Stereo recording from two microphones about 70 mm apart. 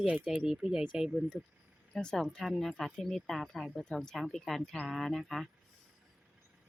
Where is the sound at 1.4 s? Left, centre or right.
Right.